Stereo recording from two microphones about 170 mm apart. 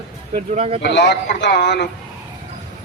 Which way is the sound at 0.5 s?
35° right (ahead or behind).